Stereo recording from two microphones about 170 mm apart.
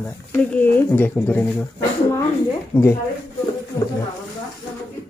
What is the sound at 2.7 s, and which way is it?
Speech, 15° left (ahead or behind).